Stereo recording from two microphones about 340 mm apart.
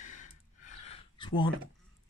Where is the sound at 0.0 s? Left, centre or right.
Left.